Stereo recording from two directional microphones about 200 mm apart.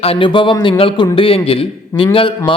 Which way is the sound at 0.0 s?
25° left (ahead or behind).